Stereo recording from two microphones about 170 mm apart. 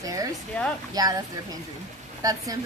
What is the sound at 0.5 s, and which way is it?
Speech, 10° left (ahead or behind).